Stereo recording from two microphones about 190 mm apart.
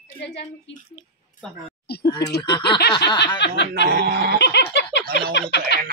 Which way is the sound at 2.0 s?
20° left (ahead or behind).